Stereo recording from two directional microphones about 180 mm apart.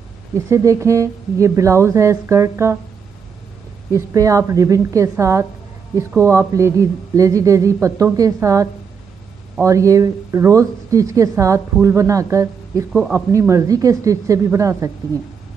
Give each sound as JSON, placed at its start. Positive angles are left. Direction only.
{"t": 0.5, "sound": "speech", "side_deg": -15}
{"t": 3.9, "sound": "speech", "side_deg": -15}